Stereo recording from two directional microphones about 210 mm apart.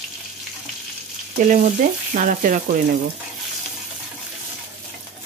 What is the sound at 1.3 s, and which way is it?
Frying, 40° right (ahead or behind).